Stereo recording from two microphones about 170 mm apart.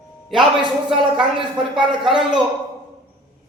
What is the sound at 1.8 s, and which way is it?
Speech, 5° right (ahead or behind).